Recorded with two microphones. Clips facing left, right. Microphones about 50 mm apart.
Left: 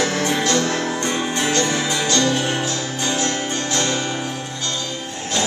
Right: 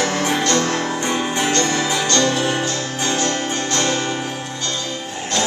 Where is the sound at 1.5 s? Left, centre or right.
Centre.